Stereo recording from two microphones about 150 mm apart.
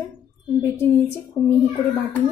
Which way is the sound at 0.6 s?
15° left (ahead or behind).